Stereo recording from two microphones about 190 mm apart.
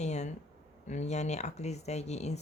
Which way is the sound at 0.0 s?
35° left (ahead or behind).